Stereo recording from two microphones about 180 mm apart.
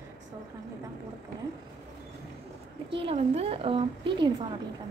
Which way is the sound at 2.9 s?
30° right (ahead or behind).